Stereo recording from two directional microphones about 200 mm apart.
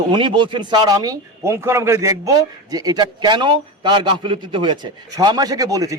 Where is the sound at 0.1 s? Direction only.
25° right (ahead or behind).